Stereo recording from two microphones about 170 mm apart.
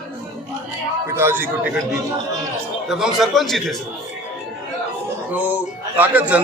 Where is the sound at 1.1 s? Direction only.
15° right (ahead or behind).